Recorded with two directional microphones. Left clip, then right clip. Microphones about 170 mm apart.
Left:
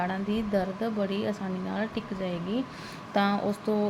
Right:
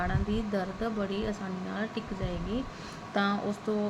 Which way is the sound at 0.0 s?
25° left (ahead or behind).